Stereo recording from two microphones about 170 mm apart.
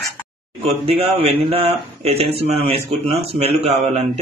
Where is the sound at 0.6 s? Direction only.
35° right (ahead or behind).